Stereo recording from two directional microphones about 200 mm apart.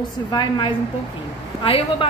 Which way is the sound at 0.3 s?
25° left (ahead or behind).